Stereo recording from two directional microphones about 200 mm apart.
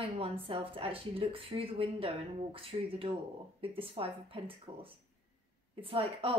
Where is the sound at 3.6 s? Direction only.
30° right (ahead or behind).